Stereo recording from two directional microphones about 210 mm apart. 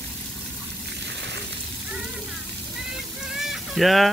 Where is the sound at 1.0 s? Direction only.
55° right (ahead or behind).